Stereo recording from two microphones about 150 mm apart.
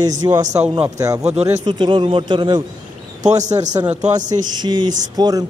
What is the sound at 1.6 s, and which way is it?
A man's voice, 30° right (ahead or behind).